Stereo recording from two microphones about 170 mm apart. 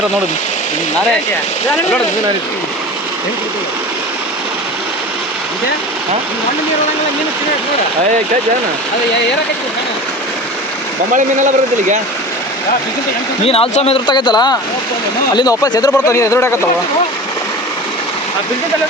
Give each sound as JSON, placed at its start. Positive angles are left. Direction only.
{"t": 11.1, "sound": "speech", "side_deg": -45}
{"t": 13.4, "sound": "speech", "side_deg": 35}